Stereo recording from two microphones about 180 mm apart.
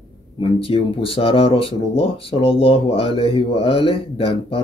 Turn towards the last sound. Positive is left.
turn(degrees=30)  # may be behind; listen again after turning